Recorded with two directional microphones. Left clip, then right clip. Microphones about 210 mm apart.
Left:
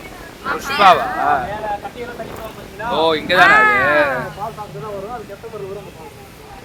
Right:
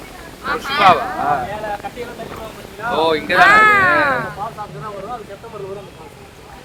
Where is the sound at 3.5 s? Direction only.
10° right (ahead or behind).